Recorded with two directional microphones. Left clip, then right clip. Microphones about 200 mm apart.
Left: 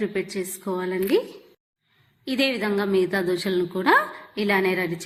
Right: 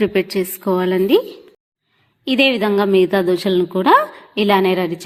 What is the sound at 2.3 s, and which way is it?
A woman's voice, 35° right (ahead or behind).